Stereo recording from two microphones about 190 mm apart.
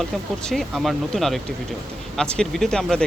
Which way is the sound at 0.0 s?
Centre (ahead or behind).